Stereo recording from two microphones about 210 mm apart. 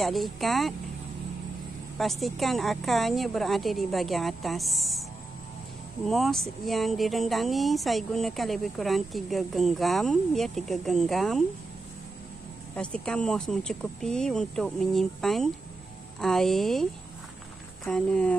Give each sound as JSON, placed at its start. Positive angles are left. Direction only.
{"t": 0.0, "sound": "speech", "side_deg": 0}
{"t": 2.0, "sound": "speech", "side_deg": 0}
{"t": 6.0, "sound": "speech", "side_deg": 0}
{"t": 12.7, "sound": "speech", "side_deg": 5}
{"t": 17.8, "sound": "speech", "side_deg": 5}